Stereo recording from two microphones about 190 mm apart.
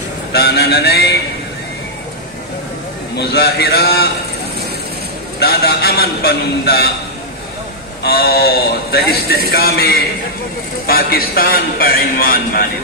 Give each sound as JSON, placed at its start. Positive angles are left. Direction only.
{"t": 0.3, "sound": "a man's voice", "side_deg": 55}
{"t": 3.2, "sound": "a man's voice", "side_deg": 55}
{"t": 5.4, "sound": "a man's voice", "side_deg": 55}
{"t": 8.0, "sound": "a man's voice", "side_deg": 55}